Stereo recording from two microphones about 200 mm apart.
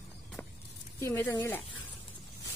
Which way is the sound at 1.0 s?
15° left (ahead or behind).